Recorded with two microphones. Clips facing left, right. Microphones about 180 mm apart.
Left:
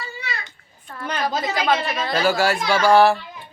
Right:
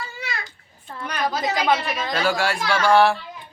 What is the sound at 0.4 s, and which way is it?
Babbling, 25° right (ahead or behind).